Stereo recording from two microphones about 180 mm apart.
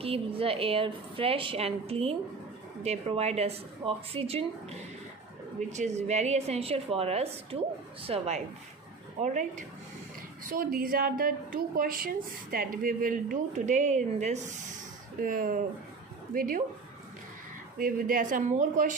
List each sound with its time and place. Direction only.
0.0 s a woman's voice: 30° right (ahead or behind)
5.7 s a woman's voice: 40° right (ahead or behind)
10.5 s a woman's voice: 55° right (ahead or behind)
17.7 s a woman's voice: 50° right (ahead or behind)